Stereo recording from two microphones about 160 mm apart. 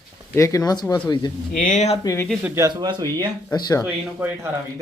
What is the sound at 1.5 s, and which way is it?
Speech, 50° left (ahead or behind).